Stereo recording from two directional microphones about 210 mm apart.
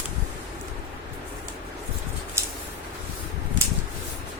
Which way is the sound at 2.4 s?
15° right (ahead or behind).